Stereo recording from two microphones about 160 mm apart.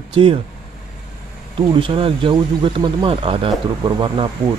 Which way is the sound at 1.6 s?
30° right (ahead or behind).